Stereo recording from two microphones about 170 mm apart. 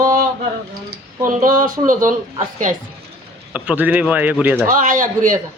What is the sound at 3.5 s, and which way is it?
Speech, 10° right (ahead or behind).